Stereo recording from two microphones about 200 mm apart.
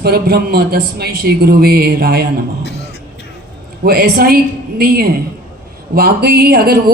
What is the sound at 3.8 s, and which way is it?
A man's voice, 50° right (ahead or behind).